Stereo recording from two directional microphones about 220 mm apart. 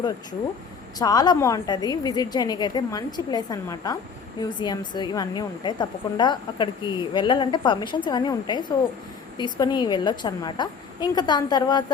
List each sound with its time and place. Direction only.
0.9 s a woman's voice: 15° left (ahead or behind)